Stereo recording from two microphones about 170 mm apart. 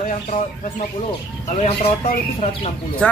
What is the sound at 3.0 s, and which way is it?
Speech, 5° left (ahead or behind).